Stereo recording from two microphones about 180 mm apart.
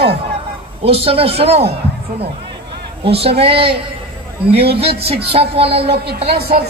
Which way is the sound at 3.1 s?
30° right (ahead or behind).